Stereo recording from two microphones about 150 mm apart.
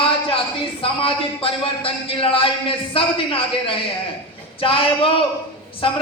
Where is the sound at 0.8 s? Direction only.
35° left (ahead or behind).